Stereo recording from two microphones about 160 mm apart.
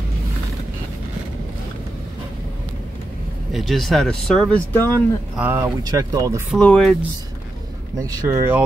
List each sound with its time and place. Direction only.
3.5 s speech: centre (ahead or behind)
5.4 s speech: 15° right (ahead or behind)
6.5 s speech: 5° left (ahead or behind)
8.0 s speech: 20° right (ahead or behind)